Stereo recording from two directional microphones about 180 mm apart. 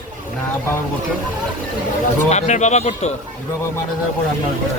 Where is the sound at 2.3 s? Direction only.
40° left (ahead or behind).